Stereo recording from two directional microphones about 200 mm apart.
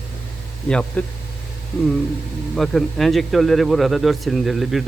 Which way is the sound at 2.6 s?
Centre (ahead or behind).